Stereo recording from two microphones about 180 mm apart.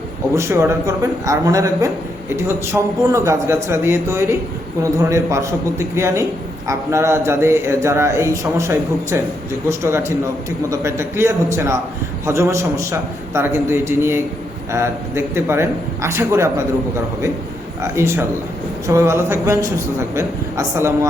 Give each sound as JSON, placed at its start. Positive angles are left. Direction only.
{"t": 0.3, "sound": "speech", "side_deg": -15}
{"t": 17.8, "sound": "speech", "side_deg": -15}